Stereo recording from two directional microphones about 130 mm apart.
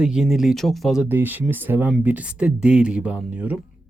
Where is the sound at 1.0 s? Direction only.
15° right (ahead or behind).